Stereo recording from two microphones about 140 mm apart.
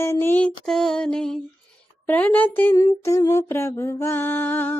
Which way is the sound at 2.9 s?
25° left (ahead or behind).